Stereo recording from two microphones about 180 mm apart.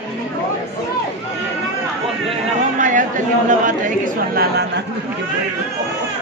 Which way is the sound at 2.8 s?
45° right (ahead or behind).